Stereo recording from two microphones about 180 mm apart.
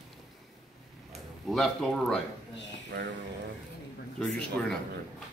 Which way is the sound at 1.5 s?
Centre (ahead or behind).